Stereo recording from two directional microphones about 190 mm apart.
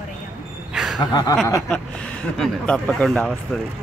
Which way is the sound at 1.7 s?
5° left (ahead or behind).